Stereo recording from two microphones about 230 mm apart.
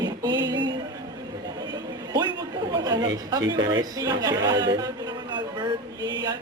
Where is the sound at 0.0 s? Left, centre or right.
Centre.